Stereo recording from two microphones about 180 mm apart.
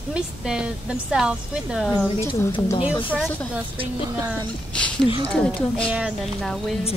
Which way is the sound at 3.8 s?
20° right (ahead or behind).